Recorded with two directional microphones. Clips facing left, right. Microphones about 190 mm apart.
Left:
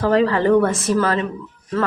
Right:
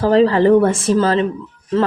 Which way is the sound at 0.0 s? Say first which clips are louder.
Right 4 dB; 30° right (ahead or behind).